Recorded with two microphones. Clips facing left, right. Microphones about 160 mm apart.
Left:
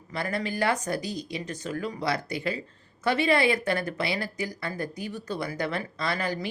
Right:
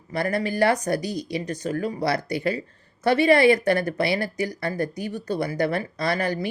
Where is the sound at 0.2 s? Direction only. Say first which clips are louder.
Right 6 dB; 40° right (ahead or behind).